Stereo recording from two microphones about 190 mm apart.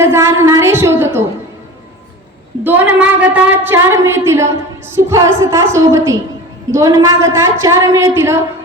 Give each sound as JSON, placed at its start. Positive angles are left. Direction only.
{"t": 0.0, "sound": "a woman's voice", "side_deg": -15}
{"t": 2.6, "sound": "a woman's voice", "side_deg": -10}